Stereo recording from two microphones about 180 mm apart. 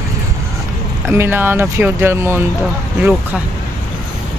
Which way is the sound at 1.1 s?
10° right (ahead or behind).